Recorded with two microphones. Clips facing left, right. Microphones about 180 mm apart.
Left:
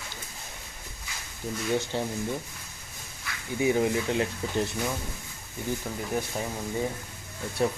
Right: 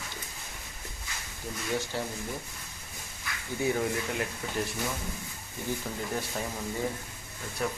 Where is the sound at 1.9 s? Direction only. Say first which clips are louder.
Left 4 dB; 25° left (ahead or behind).